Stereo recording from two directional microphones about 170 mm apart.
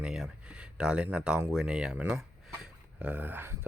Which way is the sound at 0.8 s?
5° right (ahead or behind).